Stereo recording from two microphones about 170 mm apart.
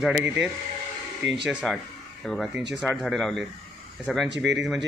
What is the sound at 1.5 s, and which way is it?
Speech, 5° right (ahead or behind).